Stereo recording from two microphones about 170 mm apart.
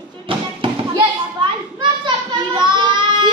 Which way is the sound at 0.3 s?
30° right (ahead or behind).